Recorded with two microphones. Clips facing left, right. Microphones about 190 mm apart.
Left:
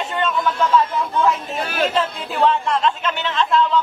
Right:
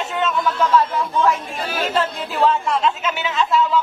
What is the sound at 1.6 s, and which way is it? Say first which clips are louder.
Speech: left 3 dB; 55° left (ahead or behind).